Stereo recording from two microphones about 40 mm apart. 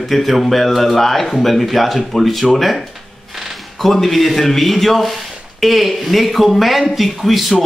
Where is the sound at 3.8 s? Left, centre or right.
Centre.